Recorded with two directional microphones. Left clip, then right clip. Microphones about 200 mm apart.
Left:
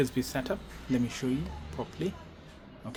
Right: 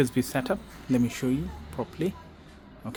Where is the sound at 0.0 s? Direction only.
50° right (ahead or behind).